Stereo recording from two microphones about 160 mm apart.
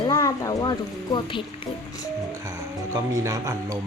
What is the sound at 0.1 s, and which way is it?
Speech, 20° left (ahead or behind).